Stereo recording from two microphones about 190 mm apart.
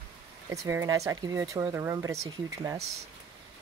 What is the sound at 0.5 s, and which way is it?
Speech, 15° right (ahead or behind).